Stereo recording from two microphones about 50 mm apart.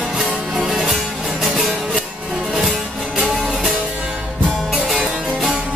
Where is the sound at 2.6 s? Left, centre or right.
Centre.